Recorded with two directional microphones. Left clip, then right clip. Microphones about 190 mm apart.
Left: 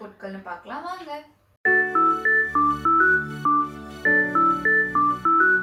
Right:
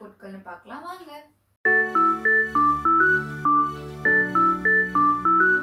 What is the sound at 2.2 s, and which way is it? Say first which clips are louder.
Music: even; centre (ahead or behind).